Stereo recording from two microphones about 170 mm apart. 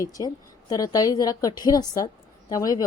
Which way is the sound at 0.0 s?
20° left (ahead or behind).